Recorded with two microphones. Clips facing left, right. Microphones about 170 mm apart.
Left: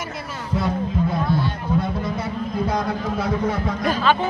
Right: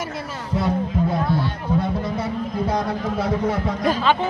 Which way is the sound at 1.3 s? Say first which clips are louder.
Even; 15° left (ahead or behind).